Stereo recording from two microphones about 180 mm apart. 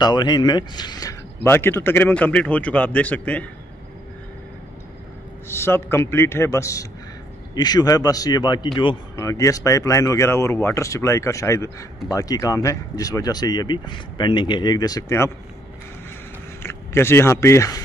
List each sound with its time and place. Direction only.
0.0 s speech: 25° left (ahead or behind); by 3.4 s 10° left (ahead or behind)
5.5 s a man's voice: 15° left (ahead or behind)
16.6 s speech: 15° left (ahead or behind)